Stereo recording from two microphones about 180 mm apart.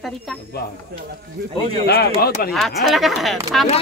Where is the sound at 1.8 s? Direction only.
60° left (ahead or behind).